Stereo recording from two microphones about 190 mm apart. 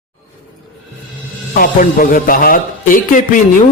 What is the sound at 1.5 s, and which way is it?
Speech, 45° left (ahead or behind).